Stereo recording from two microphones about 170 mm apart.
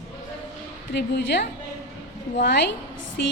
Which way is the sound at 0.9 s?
90° left.